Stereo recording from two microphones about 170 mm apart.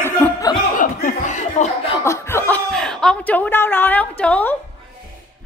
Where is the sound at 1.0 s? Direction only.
45° left (ahead or behind).